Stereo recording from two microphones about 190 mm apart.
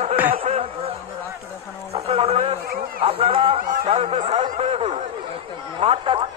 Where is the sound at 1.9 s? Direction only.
35° right (ahead or behind).